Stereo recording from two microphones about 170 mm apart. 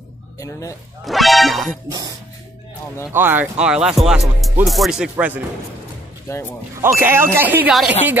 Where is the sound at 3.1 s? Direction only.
10° right (ahead or behind).